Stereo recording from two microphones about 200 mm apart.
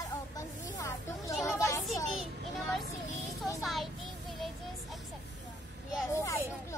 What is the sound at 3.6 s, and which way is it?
Child singing, centre (ahead or behind).